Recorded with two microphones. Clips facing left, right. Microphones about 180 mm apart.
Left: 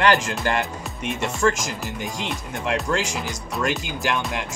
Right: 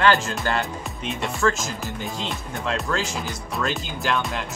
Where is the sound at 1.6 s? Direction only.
15° left (ahead or behind).